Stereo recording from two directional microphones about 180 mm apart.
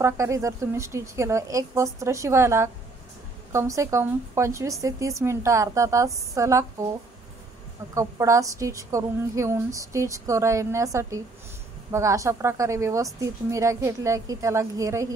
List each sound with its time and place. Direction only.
0.0 s a woman's voice: 15° right (ahead or behind)
7.9 s a woman's voice: 15° right (ahead or behind)